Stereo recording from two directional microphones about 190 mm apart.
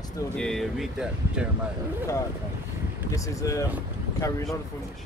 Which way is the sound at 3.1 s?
15° left (ahead or behind).